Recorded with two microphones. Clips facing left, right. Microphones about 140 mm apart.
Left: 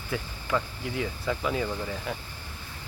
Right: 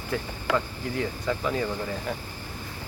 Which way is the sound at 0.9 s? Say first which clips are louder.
Right 2 dB; 5° left (ahead or behind).